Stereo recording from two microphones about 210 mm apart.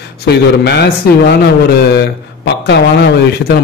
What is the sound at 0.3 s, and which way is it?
Speech, 50° left (ahead or behind).